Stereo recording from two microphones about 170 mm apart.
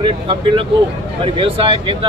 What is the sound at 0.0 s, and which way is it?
Speech, 30° right (ahead or behind).